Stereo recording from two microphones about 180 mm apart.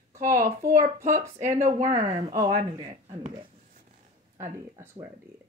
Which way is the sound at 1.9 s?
40° right (ahead or behind).